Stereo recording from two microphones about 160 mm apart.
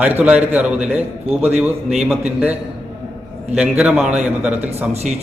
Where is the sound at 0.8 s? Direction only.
40° right (ahead or behind).